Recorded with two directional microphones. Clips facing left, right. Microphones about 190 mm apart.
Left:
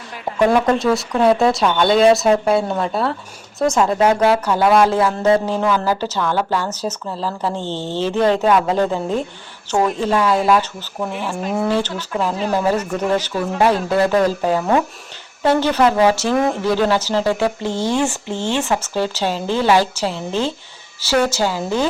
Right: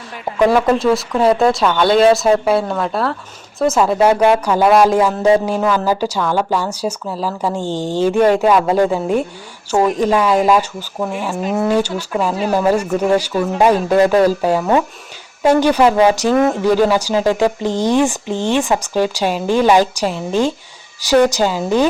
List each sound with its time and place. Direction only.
0.3 s a woman's voice: 5° right (ahead or behind)
16.3 s speech: centre (ahead or behind)
16.6 s a woman's voice: 15° right (ahead or behind)